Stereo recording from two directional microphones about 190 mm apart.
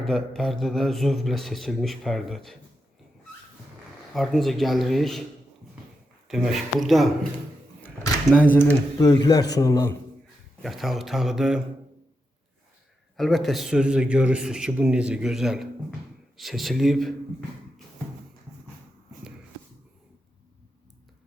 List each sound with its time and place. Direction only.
0.0 s a man's voice: centre (ahead or behind)
4.1 s a man's voice: centre (ahead or behind)
6.2 s a man's voice: centre (ahead or behind); by 9.9 s 15° left (ahead or behind)
10.6 s a man's voice: centre (ahead or behind)
13.1 s a man's voice: centre (ahead or behind)